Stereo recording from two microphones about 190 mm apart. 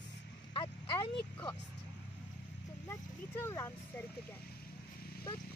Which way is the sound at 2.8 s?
10° left (ahead or behind).